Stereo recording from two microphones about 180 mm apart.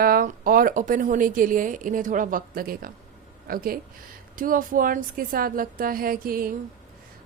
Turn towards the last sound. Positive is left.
turn(degrees=-55)  # may be behind; listen again after turning